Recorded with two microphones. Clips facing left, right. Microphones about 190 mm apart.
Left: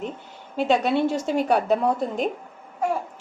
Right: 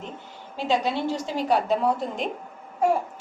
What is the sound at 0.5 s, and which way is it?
A woman's voice, 60° left (ahead or behind).